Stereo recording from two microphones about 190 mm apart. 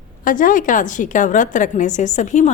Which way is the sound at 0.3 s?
45° left (ahead or behind).